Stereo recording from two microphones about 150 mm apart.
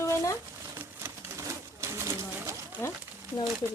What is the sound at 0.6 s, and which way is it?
Bird, 15° right (ahead or behind).